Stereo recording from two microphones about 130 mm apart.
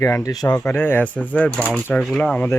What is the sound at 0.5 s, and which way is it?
Speech, 15° left (ahead or behind).